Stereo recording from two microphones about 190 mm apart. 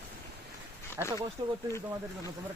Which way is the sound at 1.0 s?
10° right (ahead or behind).